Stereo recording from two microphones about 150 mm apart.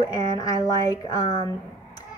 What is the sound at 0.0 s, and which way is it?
A woman's voice, 25° left (ahead or behind).